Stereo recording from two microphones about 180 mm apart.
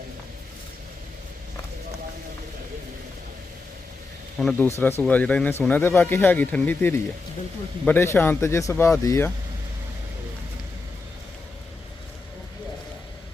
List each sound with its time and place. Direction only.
4.4 s speech: 5° left (ahead or behind)